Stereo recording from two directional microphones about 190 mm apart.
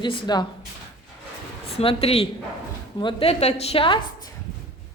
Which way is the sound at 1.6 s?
30° left (ahead or behind).